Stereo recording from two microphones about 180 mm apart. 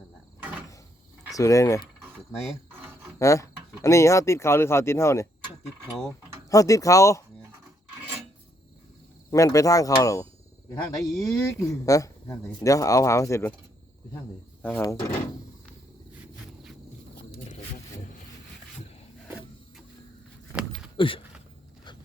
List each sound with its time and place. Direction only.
1.3 s speech: 20° left (ahead or behind)
6.5 s speech: 20° left (ahead or behind)
9.3 s speech: 20° left (ahead or behind)
14.6 s speech: 15° left (ahead or behind)
20.6 s a sound: 5° right (ahead or behind)
20.9 s a sound: 30° left (ahead or behind)